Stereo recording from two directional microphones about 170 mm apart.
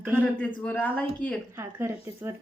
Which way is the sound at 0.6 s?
10° left (ahead or behind).